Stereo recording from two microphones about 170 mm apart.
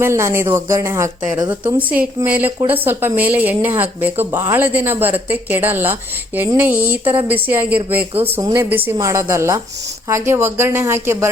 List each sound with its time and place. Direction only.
0.0 s a woman's voice: 15° right (ahead or behind)